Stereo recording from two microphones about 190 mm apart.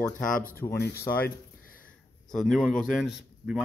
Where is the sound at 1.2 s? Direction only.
50° left (ahead or behind).